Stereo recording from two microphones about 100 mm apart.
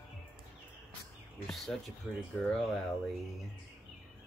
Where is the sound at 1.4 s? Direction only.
Centre (ahead or behind).